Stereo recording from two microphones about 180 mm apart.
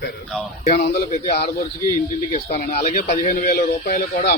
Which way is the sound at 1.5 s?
50° left (ahead or behind).